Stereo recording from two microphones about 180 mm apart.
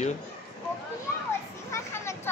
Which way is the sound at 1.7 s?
15° left (ahead or behind).